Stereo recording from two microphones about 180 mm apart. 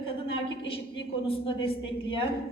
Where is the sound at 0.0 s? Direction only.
30° left (ahead or behind).